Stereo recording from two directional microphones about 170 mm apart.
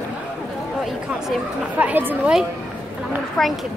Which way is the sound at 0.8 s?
5° right (ahead or behind).